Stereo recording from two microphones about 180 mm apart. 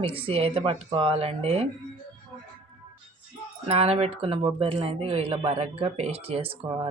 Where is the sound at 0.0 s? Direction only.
30° right (ahead or behind).